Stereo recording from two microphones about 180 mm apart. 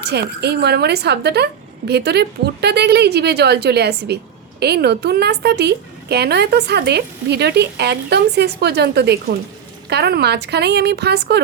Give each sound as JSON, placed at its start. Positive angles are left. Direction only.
{"t": 0.1, "sound": "a woman's voice", "side_deg": -65}